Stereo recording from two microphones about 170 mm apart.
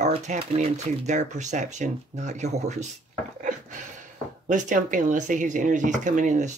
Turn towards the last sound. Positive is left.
turn(degrees=-45)  # may be behind; listen again after turning